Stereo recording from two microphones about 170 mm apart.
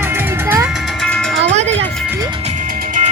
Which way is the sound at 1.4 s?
40° right (ahead or behind).